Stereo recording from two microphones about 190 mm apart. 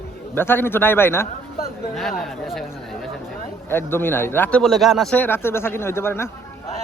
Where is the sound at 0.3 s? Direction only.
10° left (ahead or behind).